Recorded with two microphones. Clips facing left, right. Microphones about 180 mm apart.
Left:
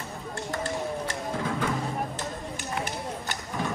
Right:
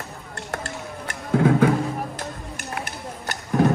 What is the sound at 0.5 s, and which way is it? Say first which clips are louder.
Music: left 2 dB; 65° right (ahead or behind).